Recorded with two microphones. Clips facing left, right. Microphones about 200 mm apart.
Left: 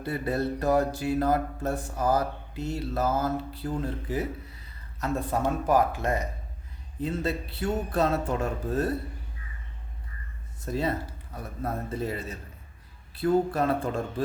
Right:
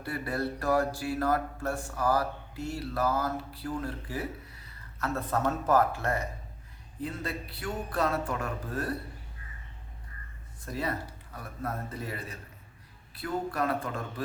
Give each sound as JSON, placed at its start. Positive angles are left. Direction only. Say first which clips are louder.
{"t": 0.0, "sound": "mantra", "louder": "left 4 dB", "side_deg": 25}
{"t": 4.9, "sound": "speech", "louder": "left 3 dB", "side_deg": 15}
{"t": 7.0, "sound": "mantra", "louder": "left 6 dB", "side_deg": 25}
{"t": 10.7, "sound": "mantra", "louder": "left 5 dB", "side_deg": 25}